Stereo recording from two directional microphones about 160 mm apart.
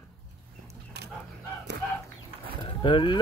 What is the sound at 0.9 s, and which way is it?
Bow-wow, 90° right.